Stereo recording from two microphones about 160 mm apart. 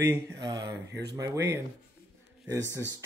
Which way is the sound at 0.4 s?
25° right (ahead or behind).